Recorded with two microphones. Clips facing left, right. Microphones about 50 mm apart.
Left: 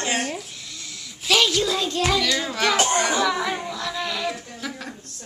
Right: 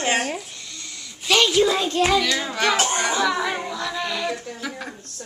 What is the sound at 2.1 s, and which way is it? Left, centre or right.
A child's voice, centre.